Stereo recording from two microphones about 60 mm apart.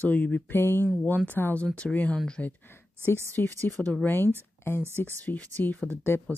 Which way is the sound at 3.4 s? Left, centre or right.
Left.